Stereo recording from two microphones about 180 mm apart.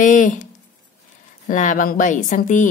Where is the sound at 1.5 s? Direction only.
45° left (ahead or behind).